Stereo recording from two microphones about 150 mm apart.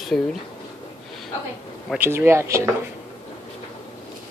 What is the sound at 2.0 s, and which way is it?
Speech, 15° right (ahead or behind).